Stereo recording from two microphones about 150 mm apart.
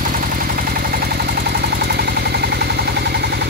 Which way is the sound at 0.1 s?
70° right (ahead or behind).